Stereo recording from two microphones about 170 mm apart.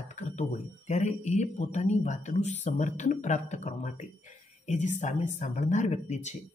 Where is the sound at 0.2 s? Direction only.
45° left (ahead or behind).